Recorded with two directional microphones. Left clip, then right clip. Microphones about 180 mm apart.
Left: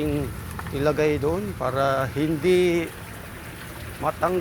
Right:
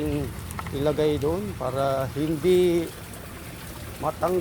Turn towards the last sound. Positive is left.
turn(degrees=-5)  # may be behind; listen again after turning